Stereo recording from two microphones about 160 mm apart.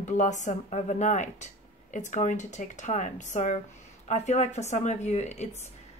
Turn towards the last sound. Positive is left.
turn(degrees=45)  # may be behind; listen again after turning